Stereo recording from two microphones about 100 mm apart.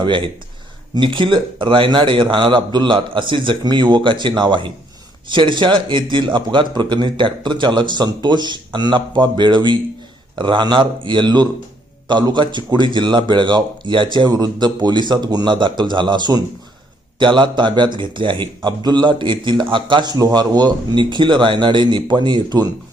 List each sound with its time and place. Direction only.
0.9 s a man's voice: 55° right (ahead or behind)